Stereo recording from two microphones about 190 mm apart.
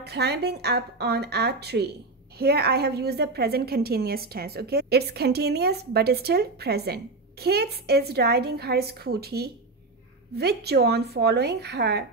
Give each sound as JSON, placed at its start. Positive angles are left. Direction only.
{"t": 0.0, "sound": "a woman's voice", "side_deg": -60}